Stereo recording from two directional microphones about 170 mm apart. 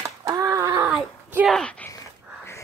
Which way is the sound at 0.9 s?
5° right (ahead or behind).